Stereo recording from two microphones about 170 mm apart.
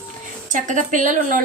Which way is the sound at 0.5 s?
50° right (ahead or behind).